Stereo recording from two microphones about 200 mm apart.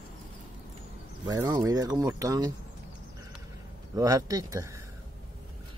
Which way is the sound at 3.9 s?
15° right (ahead or behind).